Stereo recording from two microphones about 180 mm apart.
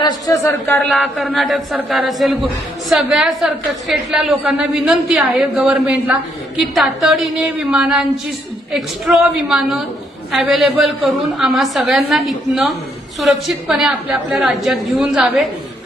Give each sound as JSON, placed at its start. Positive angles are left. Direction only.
{"t": 0.0, "sound": "a man's voice", "side_deg": 20}
{"t": 0.8, "sound": "a woman's voice", "side_deg": 0}